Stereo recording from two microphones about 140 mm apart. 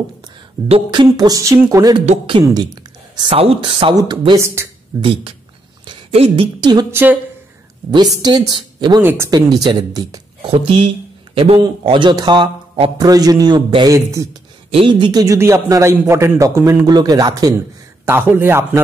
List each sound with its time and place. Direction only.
0.7 s a man's voice: 35° right (ahead or behind)
4.6 s speech: 20° right (ahead or behind)
5.0 s a woman's voice: 40° right (ahead or behind)
6.9 s a man's voice: 15° right (ahead or behind)
7.9 s speech: 30° right (ahead or behind)
9.0 s a man's voice: 15° right (ahead or behind)
9.3 s a man's voice: 30° right (ahead or behind)
10.4 s speech: 40° right (ahead or behind)
13.0 s a man's voice: 25° right (ahead or behind)
13.9 s a man's voice: 20° right (ahead or behind)
14.7 s a man's voice: 40° right (ahead or behind)
18.0 s a man's voice: 15° right (ahead or behind)